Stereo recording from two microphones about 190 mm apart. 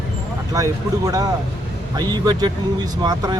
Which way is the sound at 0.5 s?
15° right (ahead or behind).